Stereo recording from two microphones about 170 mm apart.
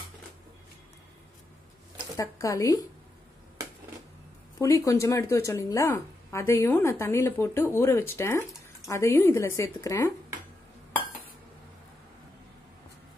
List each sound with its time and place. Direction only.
2.1 s a woman's voice: 20° left (ahead or behind)
4.6 s a woman's voice: 20° left (ahead or behind)